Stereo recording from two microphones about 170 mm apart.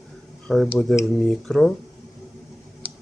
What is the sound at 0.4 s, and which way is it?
Speech, centre (ahead or behind).